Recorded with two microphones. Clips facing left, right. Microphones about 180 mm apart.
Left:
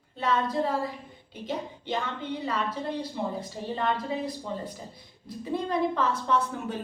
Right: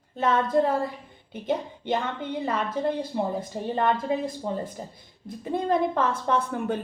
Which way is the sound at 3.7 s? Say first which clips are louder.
Right 4 dB; 50° right (ahead or behind).